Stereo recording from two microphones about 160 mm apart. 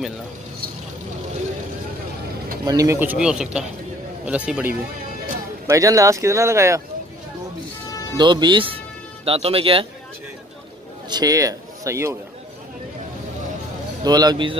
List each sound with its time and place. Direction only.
2.6 s speech: 25° right (ahead or behind)
5.7 s speech: 20° right (ahead or behind)
8.2 s speech: 30° right (ahead or behind)
11.1 s a man's voice: 25° right (ahead or behind)
14.0 s speech: 25° right (ahead or behind)